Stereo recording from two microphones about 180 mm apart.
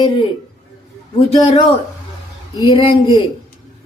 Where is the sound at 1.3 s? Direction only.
30° left (ahead or behind).